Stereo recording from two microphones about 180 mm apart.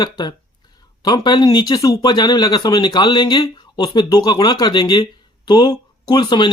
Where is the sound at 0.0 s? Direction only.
25° left (ahead or behind).